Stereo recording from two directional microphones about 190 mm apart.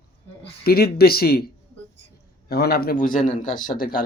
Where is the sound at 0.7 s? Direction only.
55° left (ahead or behind).